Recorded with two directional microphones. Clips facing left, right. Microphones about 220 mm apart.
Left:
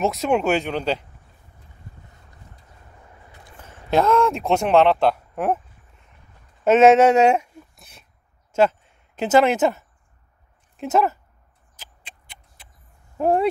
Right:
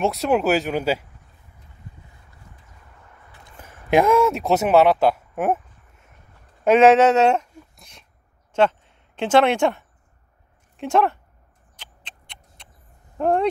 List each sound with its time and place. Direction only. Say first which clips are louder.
0.0 s speech: right 1 dB; centre (ahead or behind)
3.6 s speech: right 2 dB; 15° right (ahead or behind)
6.6 s speech: even; 5° left (ahead or behind)
11.7 s a sound: even; 10° left (ahead or behind)
13.2 s speech: left 1 dB; 5° left (ahead or behind)